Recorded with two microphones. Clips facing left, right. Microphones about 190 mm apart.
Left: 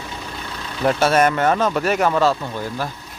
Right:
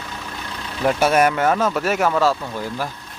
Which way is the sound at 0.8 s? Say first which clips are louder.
Even; 10° right (ahead or behind).